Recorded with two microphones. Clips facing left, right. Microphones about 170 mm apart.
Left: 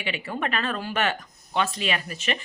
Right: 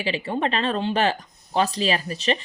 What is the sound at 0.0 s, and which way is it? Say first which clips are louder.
A woman's voice: right 5 dB; 30° right (ahead or behind).